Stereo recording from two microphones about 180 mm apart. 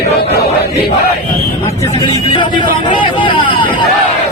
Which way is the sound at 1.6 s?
20° left (ahead or behind).